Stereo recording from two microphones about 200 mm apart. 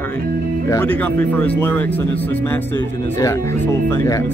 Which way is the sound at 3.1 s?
15° left (ahead or behind).